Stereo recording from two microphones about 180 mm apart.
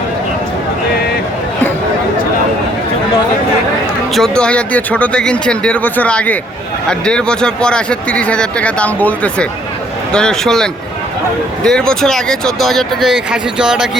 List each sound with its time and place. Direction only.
4.1 s speech: 5° left (ahead or behind)